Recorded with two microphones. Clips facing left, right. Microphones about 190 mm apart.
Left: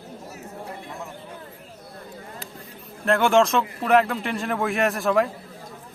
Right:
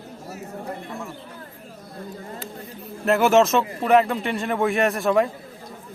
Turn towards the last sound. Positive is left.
turn(degrees=0)  # may be behind; listen again after turning